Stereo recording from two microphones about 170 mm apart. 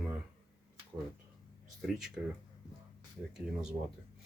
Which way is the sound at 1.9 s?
5° right (ahead or behind).